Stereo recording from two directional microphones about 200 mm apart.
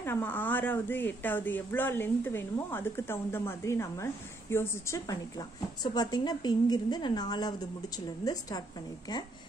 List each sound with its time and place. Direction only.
0.0 s a woman's voice: 10° left (ahead or behind)